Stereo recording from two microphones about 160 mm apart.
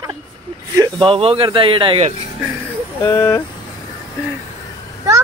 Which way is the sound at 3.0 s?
15° left (ahead or behind).